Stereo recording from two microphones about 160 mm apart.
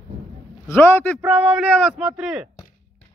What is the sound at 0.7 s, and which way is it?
Speech, 15° left (ahead or behind).